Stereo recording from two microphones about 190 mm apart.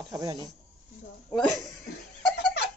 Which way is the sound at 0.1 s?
20° right (ahead or behind).